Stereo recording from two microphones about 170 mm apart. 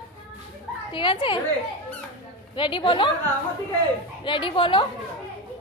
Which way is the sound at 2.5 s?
30° left (ahead or behind).